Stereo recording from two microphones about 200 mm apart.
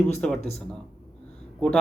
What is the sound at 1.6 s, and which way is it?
Speech, 5° left (ahead or behind).